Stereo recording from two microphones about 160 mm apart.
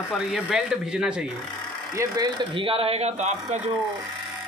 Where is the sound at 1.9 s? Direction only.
20° right (ahead or behind).